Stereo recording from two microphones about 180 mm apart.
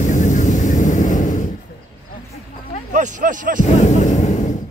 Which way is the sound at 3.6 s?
40° left (ahead or behind).